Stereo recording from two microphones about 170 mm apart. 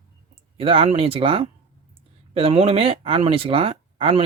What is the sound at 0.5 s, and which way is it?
Speech, 30° right (ahead or behind).